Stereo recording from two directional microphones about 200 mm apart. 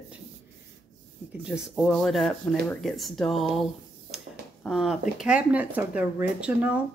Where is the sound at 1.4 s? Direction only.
5° right (ahead or behind).